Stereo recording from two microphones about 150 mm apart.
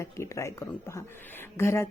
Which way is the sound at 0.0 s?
20° left (ahead or behind).